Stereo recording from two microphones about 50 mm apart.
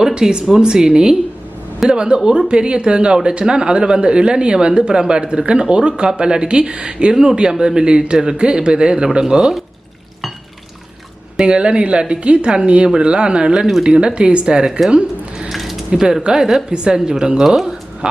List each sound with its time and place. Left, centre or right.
0.0 s speech: centre
11.4 s speech: centre
14.8 s a sound: centre
15.4 s a sound: centre
15.9 s speech: centre
18.0 s speech: right